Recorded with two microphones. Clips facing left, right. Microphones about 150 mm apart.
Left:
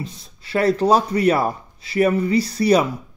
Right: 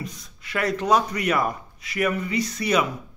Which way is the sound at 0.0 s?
30° left (ahead or behind).